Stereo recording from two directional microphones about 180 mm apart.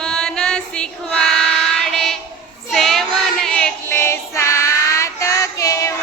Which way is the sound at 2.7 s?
Centre (ahead or behind).